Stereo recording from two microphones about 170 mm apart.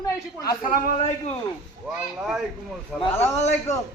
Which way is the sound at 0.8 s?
45° left (ahead or behind).